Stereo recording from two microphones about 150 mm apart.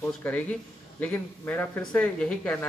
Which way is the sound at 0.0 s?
10° left (ahead or behind).